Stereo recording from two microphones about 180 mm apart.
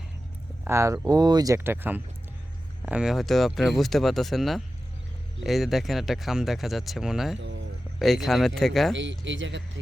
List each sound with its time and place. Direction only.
0.6 s speech: 15° right (ahead or behind)
7.3 s a sound: 90° right
7.9 s speech: centre (ahead or behind)
9.0 s speech: 90° right